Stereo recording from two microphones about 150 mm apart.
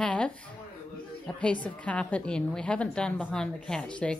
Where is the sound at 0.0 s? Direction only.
5° left (ahead or behind).